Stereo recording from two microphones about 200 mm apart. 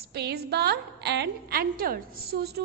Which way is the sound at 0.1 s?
55° right (ahead or behind).